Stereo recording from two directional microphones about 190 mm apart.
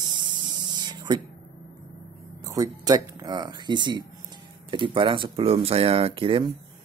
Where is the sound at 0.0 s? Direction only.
25° right (ahead or behind).